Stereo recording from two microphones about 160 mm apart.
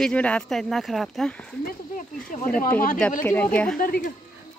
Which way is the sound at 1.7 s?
55° left (ahead or behind).